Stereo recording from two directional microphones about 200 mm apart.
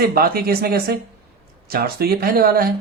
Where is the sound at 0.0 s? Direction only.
50° right (ahead or behind).